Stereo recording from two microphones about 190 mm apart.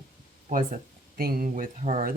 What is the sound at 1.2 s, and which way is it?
Speech, 50° right (ahead or behind).